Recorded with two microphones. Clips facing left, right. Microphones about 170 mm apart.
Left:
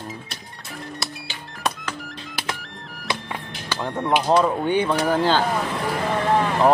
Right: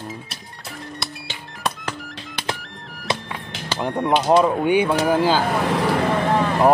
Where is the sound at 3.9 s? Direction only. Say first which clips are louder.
Right 2 dB; centre (ahead or behind).